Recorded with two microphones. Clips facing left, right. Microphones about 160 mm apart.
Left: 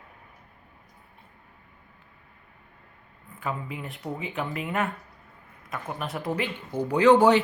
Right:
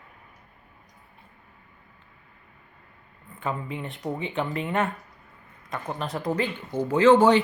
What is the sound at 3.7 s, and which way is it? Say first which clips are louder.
Speech: right 3 dB; 5° left (ahead or behind).